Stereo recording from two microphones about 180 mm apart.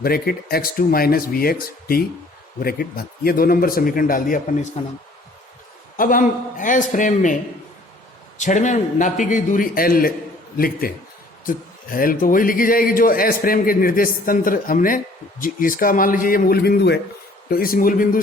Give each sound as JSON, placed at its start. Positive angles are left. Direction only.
{"t": 0.0, "sound": "speech", "side_deg": 55}
{"t": 4.8, "sound": "speech", "side_deg": 35}
{"t": 6.0, "sound": "speech", "side_deg": 50}
{"t": 8.4, "sound": "speech", "side_deg": 40}
{"t": 17.5, "sound": "speech", "side_deg": 55}